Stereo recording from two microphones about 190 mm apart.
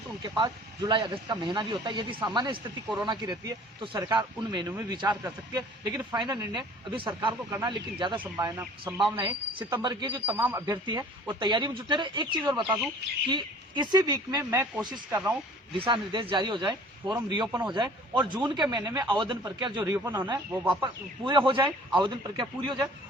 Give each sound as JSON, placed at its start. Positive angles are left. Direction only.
{"t": 0.3, "sound": "speech", "side_deg": -20}
{"t": 8.2, "sound": "speech", "side_deg": -15}
{"t": 10.2, "sound": "speech", "side_deg": -10}
{"t": 15.1, "sound": "speech", "side_deg": -10}
{"t": 15.7, "sound": "speech", "side_deg": -25}